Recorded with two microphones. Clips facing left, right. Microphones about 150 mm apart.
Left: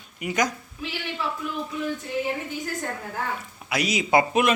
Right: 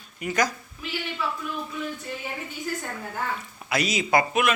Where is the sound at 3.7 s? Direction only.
10° left (ahead or behind).